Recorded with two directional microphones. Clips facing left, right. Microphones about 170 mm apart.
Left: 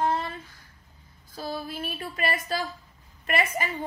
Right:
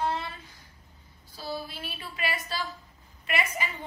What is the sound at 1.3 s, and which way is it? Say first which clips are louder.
A woman's voice: left 3 dB; 50° left (ahead or behind).